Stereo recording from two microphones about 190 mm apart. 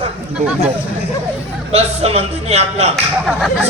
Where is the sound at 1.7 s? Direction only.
35° right (ahead or behind).